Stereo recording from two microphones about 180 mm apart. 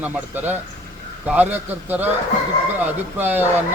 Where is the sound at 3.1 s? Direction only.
10° right (ahead or behind).